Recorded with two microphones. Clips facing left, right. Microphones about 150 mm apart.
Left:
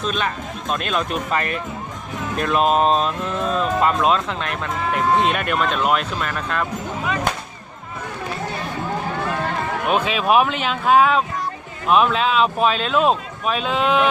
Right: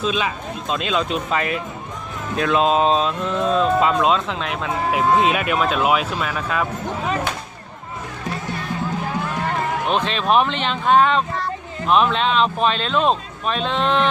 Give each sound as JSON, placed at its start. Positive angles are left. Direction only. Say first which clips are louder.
{"t": 0.0, "sound": "speech", "louder": "right 1 dB", "side_deg": -5}
{"t": 9.9, "sound": "speech", "louder": "left 2 dB", "side_deg": 10}